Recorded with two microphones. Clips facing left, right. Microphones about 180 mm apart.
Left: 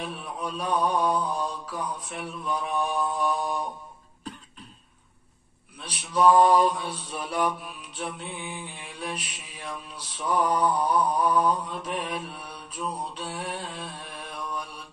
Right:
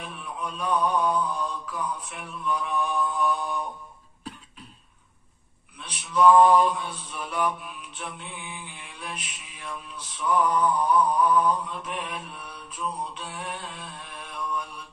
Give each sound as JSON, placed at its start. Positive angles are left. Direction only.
{"t": 0.1, "sound": "mantra", "side_deg": 35}
{"t": 5.9, "sound": "mantra", "side_deg": 35}